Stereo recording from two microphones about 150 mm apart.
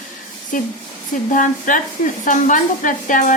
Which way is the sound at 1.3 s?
60° left (ahead or behind).